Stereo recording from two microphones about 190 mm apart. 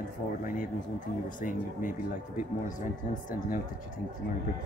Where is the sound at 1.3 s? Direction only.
45° left (ahead or behind).